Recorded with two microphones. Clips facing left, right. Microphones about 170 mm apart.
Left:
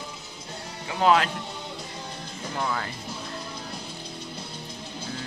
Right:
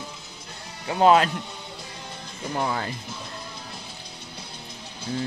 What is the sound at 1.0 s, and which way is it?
Speech, 30° right (ahead or behind).